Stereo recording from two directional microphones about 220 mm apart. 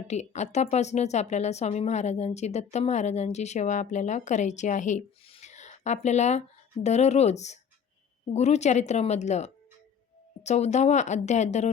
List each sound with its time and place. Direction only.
0.1 s a woman's voice: 30° left (ahead or behind)